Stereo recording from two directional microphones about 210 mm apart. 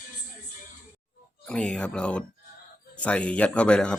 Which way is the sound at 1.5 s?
5° left (ahead or behind).